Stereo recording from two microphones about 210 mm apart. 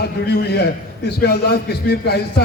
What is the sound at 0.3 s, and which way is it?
A man's voice, 50° left (ahead or behind).